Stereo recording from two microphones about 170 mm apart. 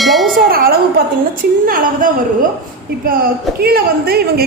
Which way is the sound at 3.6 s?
65° right (ahead or behind).